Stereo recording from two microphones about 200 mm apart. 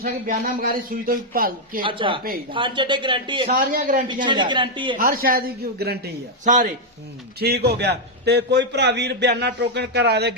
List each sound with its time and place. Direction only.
0.0 s a man's voice: 45° right (ahead or behind)
1.8 s a man's voice: 25° right (ahead or behind)
3.5 s a man's voice: 45° right (ahead or behind)
4.2 s a man's voice: 25° right (ahead or behind)
4.9 s a man's voice: 45° right (ahead or behind)
6.4 s speech: 40° right (ahead or behind)
7.3 s a man's voice: 50° right (ahead or behind)